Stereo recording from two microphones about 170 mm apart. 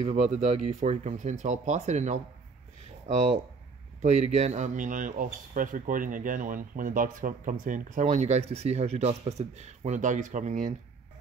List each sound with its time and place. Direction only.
0.0 s speech: 40° right (ahead or behind)
4.0 s speech: 40° right (ahead or behind)